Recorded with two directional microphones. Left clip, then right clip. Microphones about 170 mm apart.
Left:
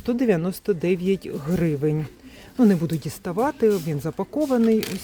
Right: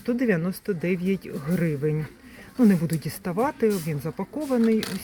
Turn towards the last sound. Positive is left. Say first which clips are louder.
# left 3 dB
turn(degrees=15)  # may be behind; listen again after turning